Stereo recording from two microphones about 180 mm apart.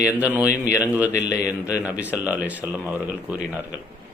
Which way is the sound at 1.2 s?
20° left (ahead or behind).